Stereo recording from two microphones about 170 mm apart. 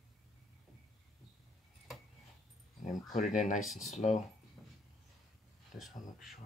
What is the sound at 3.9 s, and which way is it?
Speech, 40° left (ahead or behind).